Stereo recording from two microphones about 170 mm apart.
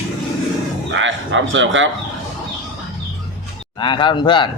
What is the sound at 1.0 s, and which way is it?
Speech, 90° right.